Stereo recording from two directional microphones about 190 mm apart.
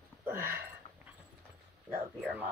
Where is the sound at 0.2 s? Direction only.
10° right (ahead or behind).